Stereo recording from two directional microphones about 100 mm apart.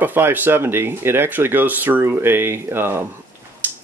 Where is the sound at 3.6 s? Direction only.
15° right (ahead or behind).